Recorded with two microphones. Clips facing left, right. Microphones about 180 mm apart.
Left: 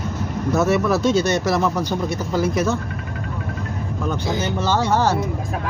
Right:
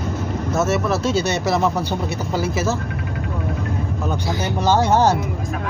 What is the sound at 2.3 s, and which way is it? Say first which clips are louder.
Speech: left 2 dB; 5° right (ahead or behind).